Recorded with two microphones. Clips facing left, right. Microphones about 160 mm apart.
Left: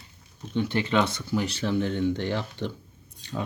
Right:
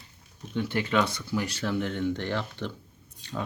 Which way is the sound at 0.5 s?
25° left (ahead or behind).